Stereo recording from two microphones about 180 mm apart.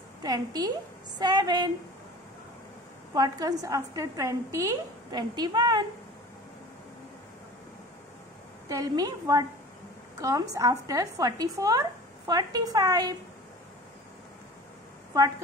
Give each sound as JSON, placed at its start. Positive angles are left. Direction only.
{"t": 0.2, "sound": "speech", "side_deg": -20}
{"t": 3.2, "sound": "speech", "side_deg": -20}
{"t": 8.6, "sound": "speech", "side_deg": -20}